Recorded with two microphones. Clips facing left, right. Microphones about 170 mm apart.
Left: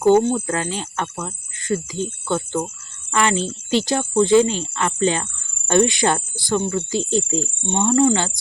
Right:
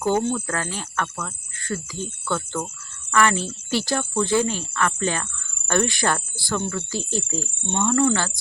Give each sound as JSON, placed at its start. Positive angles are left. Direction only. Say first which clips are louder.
{"t": 0.1, "sound": "speech", "louder": "left 7 dB", "side_deg": 20}